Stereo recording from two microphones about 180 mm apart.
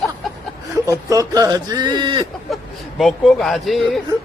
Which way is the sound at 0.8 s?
20° right (ahead or behind).